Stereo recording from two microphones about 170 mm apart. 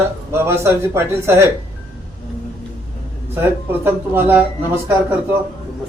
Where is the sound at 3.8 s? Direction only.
10° right (ahead or behind).